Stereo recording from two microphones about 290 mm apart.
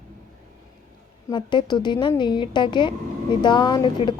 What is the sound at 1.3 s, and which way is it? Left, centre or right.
Speech, centre.